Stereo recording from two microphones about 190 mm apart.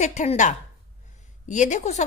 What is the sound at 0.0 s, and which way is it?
A woman's voice, 40° left (ahead or behind).